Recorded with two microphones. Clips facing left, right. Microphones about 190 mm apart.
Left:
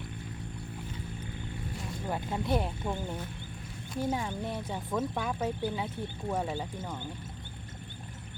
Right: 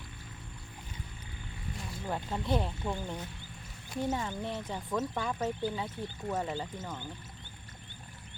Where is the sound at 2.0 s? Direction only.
10° left (ahead or behind).